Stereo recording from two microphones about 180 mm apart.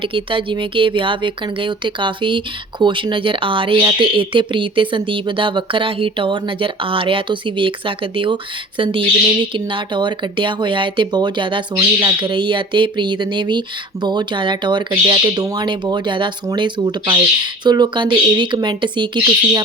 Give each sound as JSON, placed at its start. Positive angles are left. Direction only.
{"t": 0.1, "sound": "speech", "side_deg": -30}